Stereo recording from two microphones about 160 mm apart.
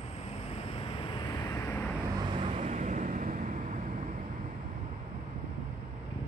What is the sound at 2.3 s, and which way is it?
Vehicle, 40° right (ahead or behind).